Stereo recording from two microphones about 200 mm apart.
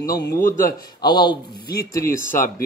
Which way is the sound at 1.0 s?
20° left (ahead or behind).